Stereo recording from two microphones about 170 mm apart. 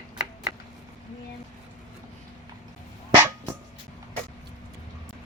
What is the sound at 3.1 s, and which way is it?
Dog, 15° right (ahead or behind).